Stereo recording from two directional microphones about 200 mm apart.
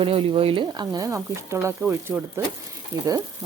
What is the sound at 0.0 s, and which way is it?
Speech, 30° right (ahead or behind).